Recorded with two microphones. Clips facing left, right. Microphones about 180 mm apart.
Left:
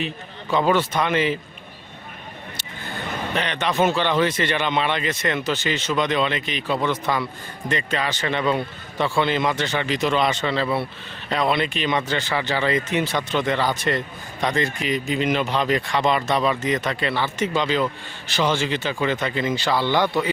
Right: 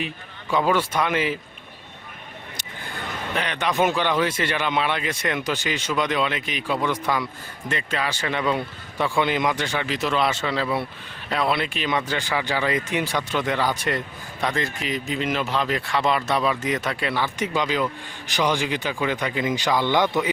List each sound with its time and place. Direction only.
0.5 s a man's voice: 10° right (ahead or behind)
3.3 s a man's voice: 5° right (ahead or behind)